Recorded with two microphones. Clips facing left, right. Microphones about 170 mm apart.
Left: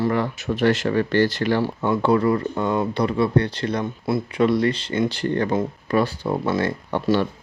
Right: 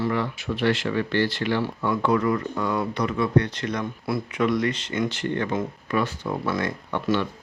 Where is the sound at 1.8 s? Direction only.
30° left (ahead or behind).